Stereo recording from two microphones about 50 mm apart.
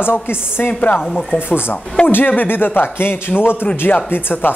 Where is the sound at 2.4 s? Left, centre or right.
Left.